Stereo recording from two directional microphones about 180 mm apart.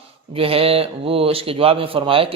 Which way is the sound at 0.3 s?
30° right (ahead or behind).